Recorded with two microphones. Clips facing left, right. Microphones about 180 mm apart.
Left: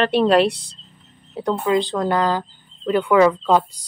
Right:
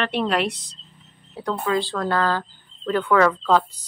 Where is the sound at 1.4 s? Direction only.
20° left (ahead or behind).